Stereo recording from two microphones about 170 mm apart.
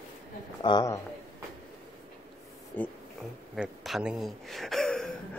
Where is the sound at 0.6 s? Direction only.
25° left (ahead or behind).